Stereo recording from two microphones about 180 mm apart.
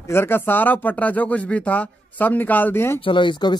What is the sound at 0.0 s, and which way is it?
Speech, 15° left (ahead or behind).